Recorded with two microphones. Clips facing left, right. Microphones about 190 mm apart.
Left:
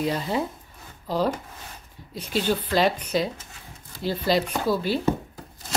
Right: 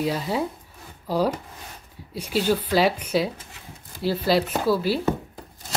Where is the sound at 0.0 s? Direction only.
5° right (ahead or behind).